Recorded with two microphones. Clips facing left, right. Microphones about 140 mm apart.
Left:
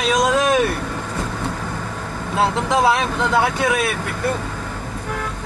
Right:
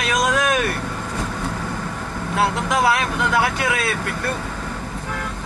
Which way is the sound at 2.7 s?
25° left (ahead or behind).